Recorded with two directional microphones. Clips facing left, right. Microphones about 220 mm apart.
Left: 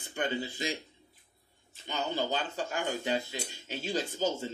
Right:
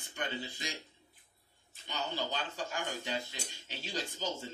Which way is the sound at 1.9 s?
50° left (ahead or behind).